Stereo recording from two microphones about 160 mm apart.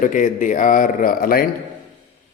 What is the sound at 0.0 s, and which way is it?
A man's voice, 55° left (ahead or behind).